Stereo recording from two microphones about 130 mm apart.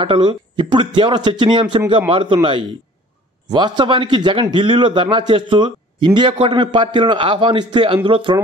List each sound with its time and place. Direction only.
0.0 s a man's voice: 40° right (ahead or behind)